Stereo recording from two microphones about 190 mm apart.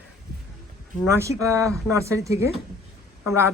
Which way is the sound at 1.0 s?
15° right (ahead or behind).